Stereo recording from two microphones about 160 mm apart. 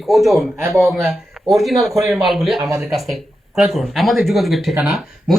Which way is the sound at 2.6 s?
20° right (ahead or behind).